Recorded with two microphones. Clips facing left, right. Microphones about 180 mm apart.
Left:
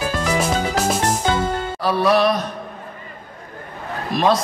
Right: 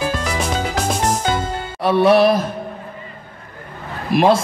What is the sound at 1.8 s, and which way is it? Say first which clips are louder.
Speech: right 5 dB; 25° right (ahead or behind).